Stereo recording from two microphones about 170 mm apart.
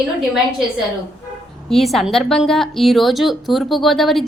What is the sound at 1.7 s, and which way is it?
A woman's voice, centre (ahead or behind).